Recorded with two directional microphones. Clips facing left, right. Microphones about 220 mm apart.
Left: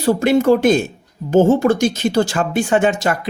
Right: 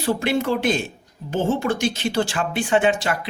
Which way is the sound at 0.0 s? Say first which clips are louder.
Left 7 dB; 45° left (ahead or behind).